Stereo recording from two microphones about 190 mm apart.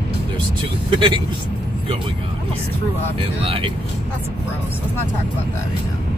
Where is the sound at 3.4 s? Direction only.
30° right (ahead or behind).